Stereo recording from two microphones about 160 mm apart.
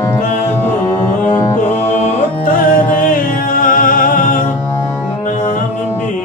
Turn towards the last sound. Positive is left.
turn(degrees=60)  # may be behind; listen again after turning